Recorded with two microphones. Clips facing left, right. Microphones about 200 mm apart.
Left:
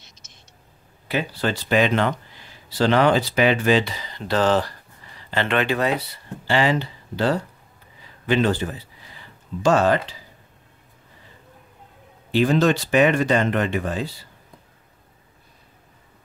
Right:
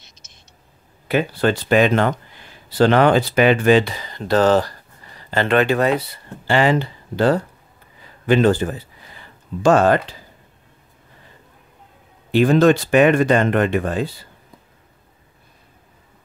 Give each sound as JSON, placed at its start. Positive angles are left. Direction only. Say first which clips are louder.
{"t": 1.0, "sound": "speech", "louder": "right 6 dB", "side_deg": -55}
{"t": 12.3, "sound": "speech", "louder": "right 5 dB", "side_deg": -55}